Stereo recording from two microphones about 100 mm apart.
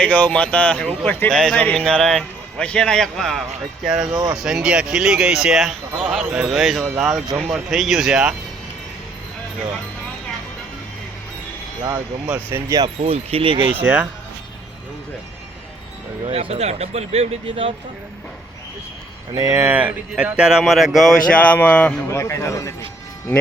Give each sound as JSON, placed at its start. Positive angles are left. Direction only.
{"t": 0.0, "sound": "speech", "side_deg": 10}
{"t": 4.1, "sound": "speech", "side_deg": -50}
{"t": 4.4, "sound": "speech", "side_deg": -10}
{"t": 12.5, "sound": "speech", "side_deg": -25}
{"t": 13.0, "sound": "speech", "side_deg": -75}
{"t": 13.7, "sound": "speech", "side_deg": -15}
{"t": 16.2, "sound": "speech", "side_deg": -90}
{"t": 19.3, "sound": "speech", "side_deg": -40}
{"t": 19.5, "sound": "speech", "side_deg": -20}
{"t": 21.3, "sound": "speech", "side_deg": 15}
{"t": 22.1, "sound": "a man's voice", "side_deg": 25}